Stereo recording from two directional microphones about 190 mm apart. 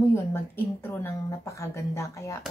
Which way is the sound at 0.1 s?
15° left (ahead or behind).